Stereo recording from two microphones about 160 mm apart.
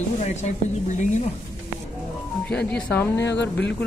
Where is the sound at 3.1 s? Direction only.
90° left.